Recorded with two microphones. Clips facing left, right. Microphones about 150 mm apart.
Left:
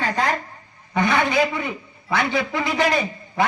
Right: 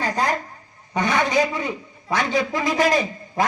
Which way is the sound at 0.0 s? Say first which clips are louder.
Even; 40° right (ahead or behind).